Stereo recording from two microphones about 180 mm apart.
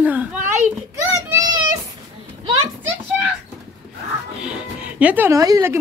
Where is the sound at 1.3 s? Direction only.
15° right (ahead or behind).